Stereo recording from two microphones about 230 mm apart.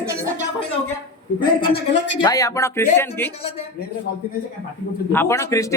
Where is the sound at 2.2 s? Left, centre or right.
Centre.